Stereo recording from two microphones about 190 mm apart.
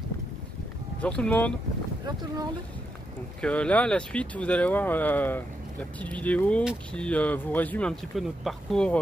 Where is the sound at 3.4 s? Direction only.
5° left (ahead or behind).